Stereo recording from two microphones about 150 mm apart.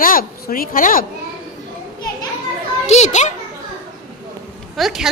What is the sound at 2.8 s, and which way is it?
Speech, 45° left (ahead or behind).